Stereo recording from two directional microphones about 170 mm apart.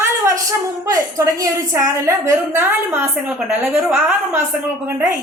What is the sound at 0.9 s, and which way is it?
A woman's voice, 20° right (ahead or behind).